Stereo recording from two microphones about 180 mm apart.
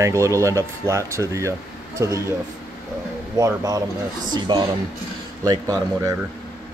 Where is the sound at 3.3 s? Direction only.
20° right (ahead or behind).